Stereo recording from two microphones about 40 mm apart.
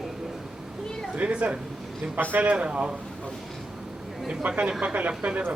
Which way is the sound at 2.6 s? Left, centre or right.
Right.